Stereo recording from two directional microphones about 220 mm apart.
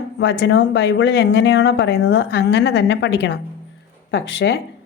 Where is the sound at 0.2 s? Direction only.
55° left (ahead or behind).